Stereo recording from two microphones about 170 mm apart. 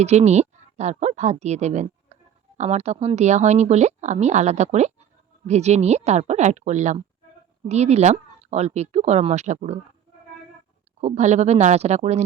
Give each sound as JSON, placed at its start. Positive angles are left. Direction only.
{"t": 0.0, "sound": "speech", "side_deg": -40}
{"t": 11.0, "sound": "speech", "side_deg": -40}